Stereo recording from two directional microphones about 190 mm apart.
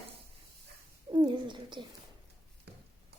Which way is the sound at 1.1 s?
25° right (ahead or behind).